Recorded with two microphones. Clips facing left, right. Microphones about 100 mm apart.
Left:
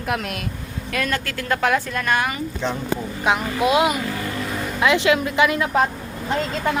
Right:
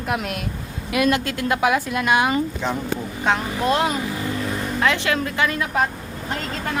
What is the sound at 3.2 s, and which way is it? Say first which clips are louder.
A woman's voice: left 1 dB; 10° left (ahead or behind).